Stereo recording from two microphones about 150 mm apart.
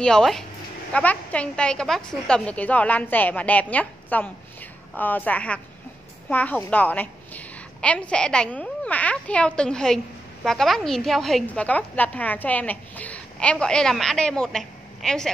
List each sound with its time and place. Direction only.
0.0 s a woman's voice: 5° left (ahead or behind)